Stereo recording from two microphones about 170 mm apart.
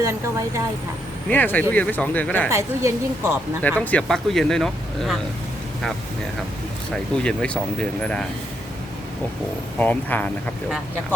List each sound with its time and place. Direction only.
0.0 s a woman's voice: 15° right (ahead or behind)
1.3 s speech: 10° left (ahead or behind)
2.5 s a woman's voice: 15° right (ahead or behind)
3.6 s speech: 10° left (ahead or behind)
6.9 s speech: 5° left (ahead or behind)
9.7 s speech: 10° left (ahead or behind)